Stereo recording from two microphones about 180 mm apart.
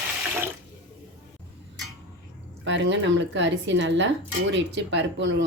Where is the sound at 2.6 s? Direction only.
85° right.